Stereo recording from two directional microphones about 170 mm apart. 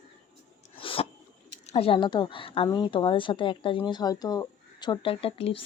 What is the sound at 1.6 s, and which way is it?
Speech, 35° left (ahead or behind).